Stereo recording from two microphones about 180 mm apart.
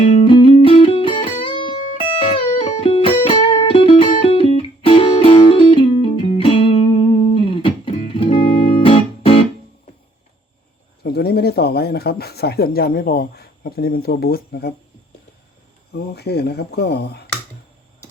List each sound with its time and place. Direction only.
0.0 s music: 30° left (ahead or behind)
11.0 s speech: 60° left (ahead or behind)
16.1 s speech: 65° left (ahead or behind)